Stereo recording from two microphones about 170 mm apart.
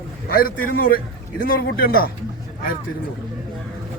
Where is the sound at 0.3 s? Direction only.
60° left (ahead or behind).